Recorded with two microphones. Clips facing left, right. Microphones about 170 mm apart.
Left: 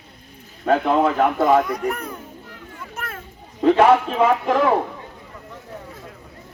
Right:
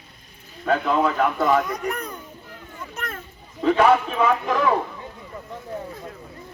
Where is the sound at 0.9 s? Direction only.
50° left (ahead or behind).